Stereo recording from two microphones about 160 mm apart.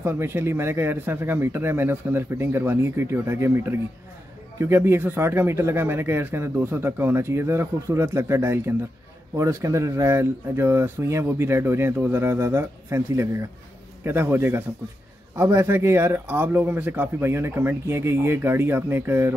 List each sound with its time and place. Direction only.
0.0 s speech: 15° right (ahead or behind)